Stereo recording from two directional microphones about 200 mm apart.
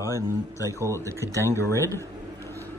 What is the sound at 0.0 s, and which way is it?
Speech, 15° left (ahead or behind).